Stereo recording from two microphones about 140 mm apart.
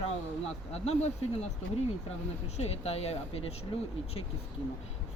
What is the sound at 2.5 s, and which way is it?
Speech, 50° left (ahead or behind).